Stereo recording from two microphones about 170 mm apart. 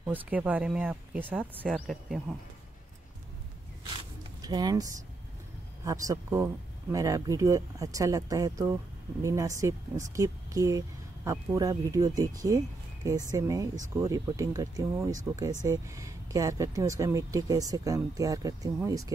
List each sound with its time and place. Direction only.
0.1 s speech: 10° right (ahead or behind)
4.4 s speech: 25° right (ahead or behind)